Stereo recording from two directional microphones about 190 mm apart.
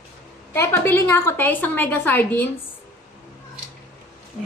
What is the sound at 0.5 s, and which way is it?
A woman's voice, 15° left (ahead or behind).